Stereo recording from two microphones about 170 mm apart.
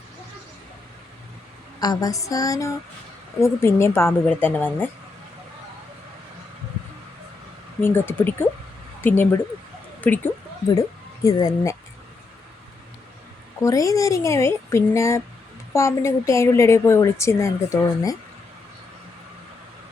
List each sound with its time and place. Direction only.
1.8 s female singing: 20° left (ahead or behind)
3.4 s a woman's voice: 15° left (ahead or behind)
7.8 s a woman's voice: 15° left (ahead or behind)
10.8 s speech: 20° left (ahead or behind)
13.6 s a woman's voice: 20° left (ahead or behind)